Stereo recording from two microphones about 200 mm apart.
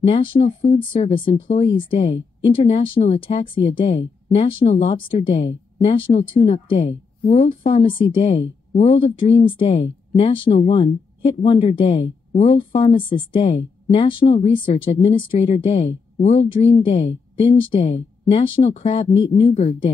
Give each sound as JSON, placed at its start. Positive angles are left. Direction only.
{"t": 0.0, "sound": "speech", "side_deg": 30}